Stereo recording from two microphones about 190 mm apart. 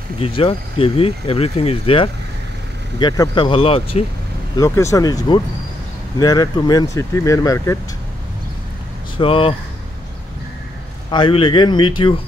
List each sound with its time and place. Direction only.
0.2 s speech: 30° left (ahead or behind)
4.6 s speech: 15° left (ahead or behind)
9.2 s speech: 30° left (ahead or behind)
11.1 s speech: 25° left (ahead or behind)